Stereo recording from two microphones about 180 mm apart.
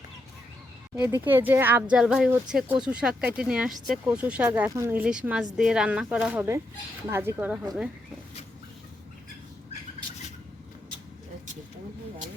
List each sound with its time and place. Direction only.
0.9 s speech: 10° right (ahead or behind)